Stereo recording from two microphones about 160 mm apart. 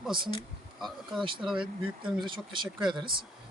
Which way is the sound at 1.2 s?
30° right (ahead or behind).